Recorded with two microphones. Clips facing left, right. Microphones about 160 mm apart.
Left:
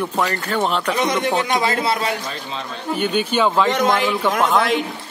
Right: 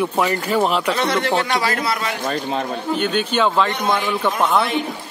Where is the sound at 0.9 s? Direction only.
15° left (ahead or behind).